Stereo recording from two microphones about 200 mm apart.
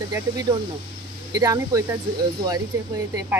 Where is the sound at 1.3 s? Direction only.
15° right (ahead or behind).